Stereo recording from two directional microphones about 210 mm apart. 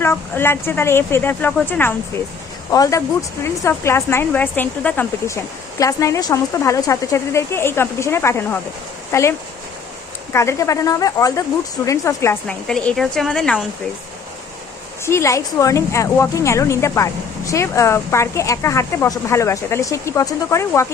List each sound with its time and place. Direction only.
0.0 s a woman's voice: 10° left (ahead or behind)
10.3 s a woman's voice: 15° left (ahead or behind)
15.0 s a woman's voice: 15° left (ahead or behind)